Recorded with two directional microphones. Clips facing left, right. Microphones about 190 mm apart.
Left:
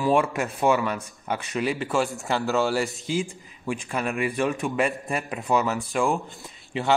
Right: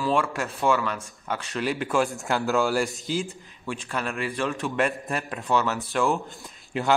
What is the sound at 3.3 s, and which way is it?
A man's voice, 15° left (ahead or behind).